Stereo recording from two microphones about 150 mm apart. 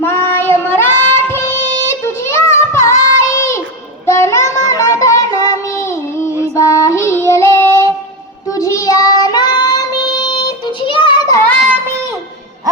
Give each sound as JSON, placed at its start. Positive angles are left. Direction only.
{"t": 0.0, "sound": "music", "side_deg": 15}
{"t": 4.0, "sound": "child singing", "side_deg": 20}
{"t": 6.8, "sound": "child singing", "side_deg": 20}